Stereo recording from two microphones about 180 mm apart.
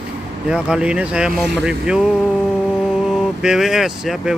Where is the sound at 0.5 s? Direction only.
5° right (ahead or behind).